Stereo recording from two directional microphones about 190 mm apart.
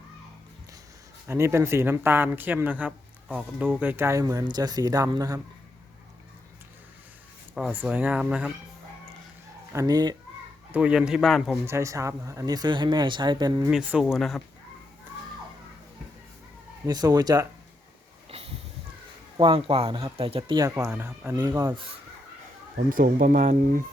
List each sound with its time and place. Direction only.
1.3 s speech: 15° right (ahead or behind)
7.5 s speech: 5° right (ahead or behind)
9.7 s speech: 20° right (ahead or behind)
10.7 s speech: 5° right (ahead or behind)
11.6 s speech: 15° right (ahead or behind)
13.6 s speech: 5° right (ahead or behind)
16.8 s speech: 20° right (ahead or behind)
18.3 s a sound: 30° right (ahead or behind)
19.4 s speech: 25° right (ahead or behind)
22.9 s speech: 50° right (ahead or behind)